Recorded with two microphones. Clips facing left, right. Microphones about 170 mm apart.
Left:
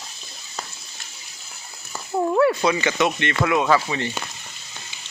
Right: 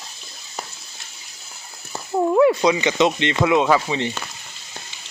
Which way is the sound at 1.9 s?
10° right (ahead or behind).